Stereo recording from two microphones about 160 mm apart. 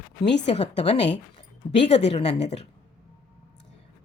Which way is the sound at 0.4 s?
40° left (ahead or behind).